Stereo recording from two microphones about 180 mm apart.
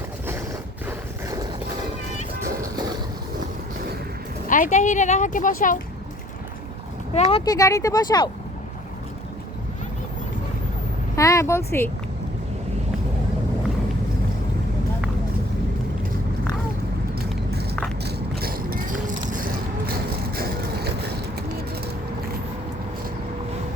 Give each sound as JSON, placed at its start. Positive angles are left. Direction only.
{"t": 0.9, "sound": "a sound", "side_deg": -20}
{"t": 4.4, "sound": "speech", "side_deg": 45}
{"t": 7.1, "sound": "speech", "side_deg": 35}
{"t": 7.5, "sound": "speech", "side_deg": 20}
{"t": 11.2, "sound": "speech", "side_deg": 15}
{"t": 18.0, "sound": "a sound", "side_deg": -60}